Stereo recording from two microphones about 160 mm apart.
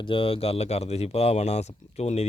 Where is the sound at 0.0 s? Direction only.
35° left (ahead or behind).